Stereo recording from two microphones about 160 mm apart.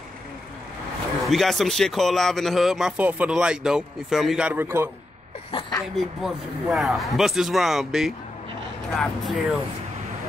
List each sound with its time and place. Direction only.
1.2 s a man's voice: centre (ahead or behind)
5.5 s a woman's voice: 35° left (ahead or behind)
5.9 s a man's voice: centre (ahead or behind)